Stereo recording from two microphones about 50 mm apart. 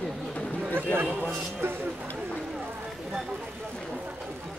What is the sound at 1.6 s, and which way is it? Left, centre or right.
Speech, right.